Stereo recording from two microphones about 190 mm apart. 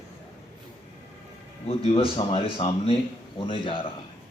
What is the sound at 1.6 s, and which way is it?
A man's voice, 30° left (ahead or behind).